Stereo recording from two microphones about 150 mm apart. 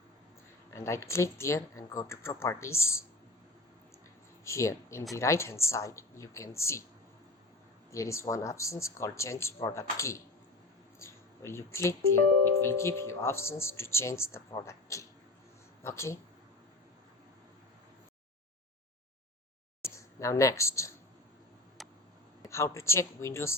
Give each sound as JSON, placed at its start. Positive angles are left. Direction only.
{"t": 0.7, "sound": "speech", "side_deg": 20}
{"t": 4.4, "sound": "speech", "side_deg": 20}
{"t": 7.9, "sound": "speech", "side_deg": 20}
{"t": 19.8, "sound": "speech", "side_deg": 20}
{"t": 21.8, "sound": "a sound", "side_deg": 0}
{"t": 22.4, "sound": "speech", "side_deg": 20}